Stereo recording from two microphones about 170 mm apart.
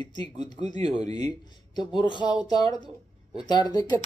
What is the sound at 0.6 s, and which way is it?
Speech, 40° right (ahead or behind).